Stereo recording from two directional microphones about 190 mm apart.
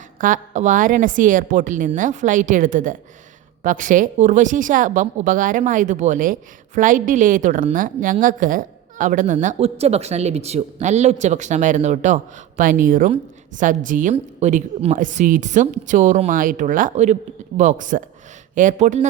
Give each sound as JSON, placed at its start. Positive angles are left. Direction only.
{"t": 0.2, "sound": "a woman's voice", "side_deg": -40}